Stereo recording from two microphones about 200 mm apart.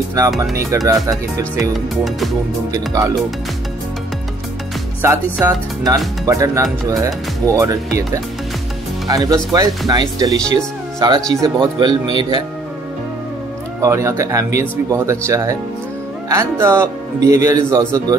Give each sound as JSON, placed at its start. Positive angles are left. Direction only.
{"t": 0.4, "sound": "speech", "side_deg": -15}
{"t": 2.0, "sound": "music", "side_deg": 0}
{"t": 2.7, "sound": "speech", "side_deg": -20}
{"t": 5.0, "sound": "speech", "side_deg": -15}
{"t": 13.7, "sound": "speech", "side_deg": -15}